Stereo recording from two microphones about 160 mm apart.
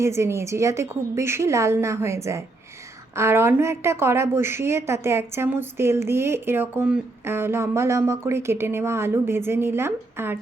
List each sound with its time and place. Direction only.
0.0 s a woman's voice: 15° right (ahead or behind)